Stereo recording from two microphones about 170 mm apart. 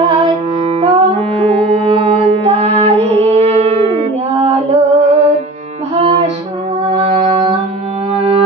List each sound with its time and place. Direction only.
0.0 s music: 30° right (ahead or behind)